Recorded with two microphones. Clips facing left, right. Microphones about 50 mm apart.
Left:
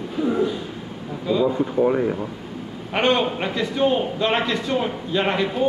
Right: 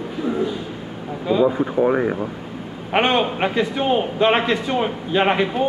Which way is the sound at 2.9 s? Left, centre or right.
Right.